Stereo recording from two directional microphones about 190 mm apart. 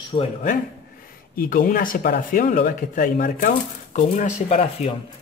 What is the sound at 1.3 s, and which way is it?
A man's voice, 45° left (ahead or behind).